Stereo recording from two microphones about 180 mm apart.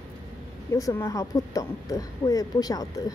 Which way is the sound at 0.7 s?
15° left (ahead or behind).